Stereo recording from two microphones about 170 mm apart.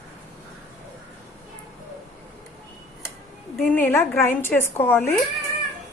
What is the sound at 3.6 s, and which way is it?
A woman's voice, 10° left (ahead or behind).